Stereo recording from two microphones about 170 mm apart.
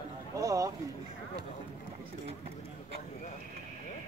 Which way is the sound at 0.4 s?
20° right (ahead or behind).